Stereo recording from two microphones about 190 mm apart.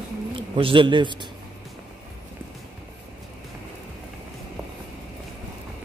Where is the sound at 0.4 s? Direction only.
30° right (ahead or behind).